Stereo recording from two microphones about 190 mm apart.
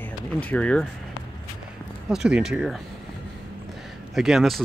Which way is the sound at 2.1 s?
5° right (ahead or behind).